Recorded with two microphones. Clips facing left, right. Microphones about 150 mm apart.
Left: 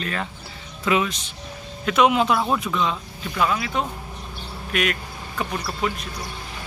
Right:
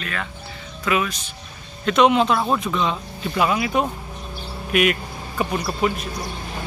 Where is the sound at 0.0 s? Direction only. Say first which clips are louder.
Left 1 dB; 30° left (ahead or behind).